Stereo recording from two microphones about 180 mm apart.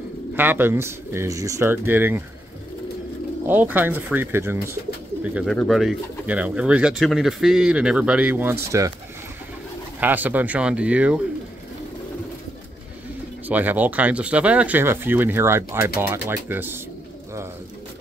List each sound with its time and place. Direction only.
0.4 s speech: 10° right (ahead or behind)
3.4 s speech: 10° right (ahead or behind)
9.9 s speech: 10° right (ahead or behind)
13.5 s speech: 10° right (ahead or behind)